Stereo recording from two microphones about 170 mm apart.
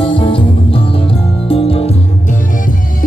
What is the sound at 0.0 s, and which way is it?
Music, 30° left (ahead or behind).